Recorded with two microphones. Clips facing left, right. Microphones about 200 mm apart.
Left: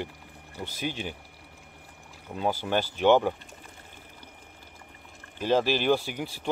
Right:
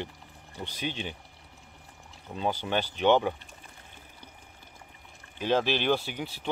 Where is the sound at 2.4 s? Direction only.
10° left (ahead or behind).